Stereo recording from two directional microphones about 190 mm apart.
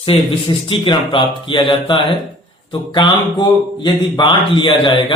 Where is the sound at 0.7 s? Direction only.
25° left (ahead or behind).